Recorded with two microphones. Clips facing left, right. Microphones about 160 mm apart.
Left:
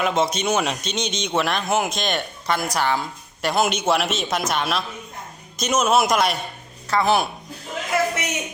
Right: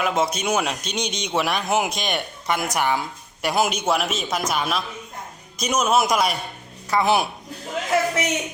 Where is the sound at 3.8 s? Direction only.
5° left (ahead or behind).